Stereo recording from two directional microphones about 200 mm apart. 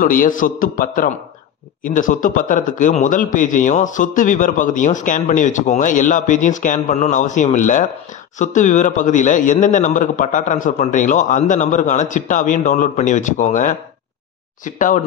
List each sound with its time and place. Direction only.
0.0 s a man's voice: 45° left (ahead or behind)